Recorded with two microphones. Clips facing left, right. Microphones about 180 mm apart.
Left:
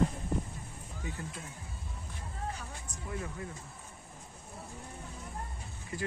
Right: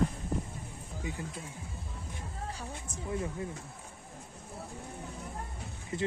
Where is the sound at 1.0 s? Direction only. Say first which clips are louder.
Right 3 dB; 15° right (ahead or behind).